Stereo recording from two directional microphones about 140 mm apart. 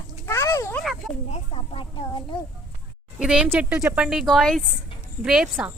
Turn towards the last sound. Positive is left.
turn(degrees=-5)  # may be behind; listen again after turning